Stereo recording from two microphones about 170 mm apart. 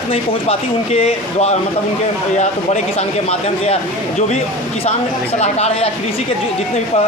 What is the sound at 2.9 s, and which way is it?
Speech, 35° left (ahead or behind).